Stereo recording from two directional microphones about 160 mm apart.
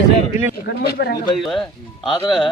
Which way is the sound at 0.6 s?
85° left.